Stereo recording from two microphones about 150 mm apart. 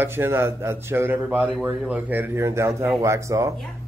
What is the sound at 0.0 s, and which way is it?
Speech, 15° right (ahead or behind).